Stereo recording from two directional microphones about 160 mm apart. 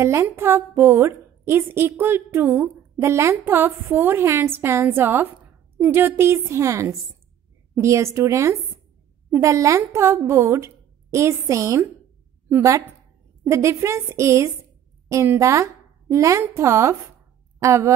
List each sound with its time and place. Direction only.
0.0 s a woman's voice: 15° right (ahead or behind)